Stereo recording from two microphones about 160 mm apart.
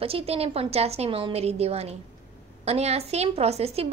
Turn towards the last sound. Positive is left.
turn(degrees=-40)  # may be behind; listen again after turning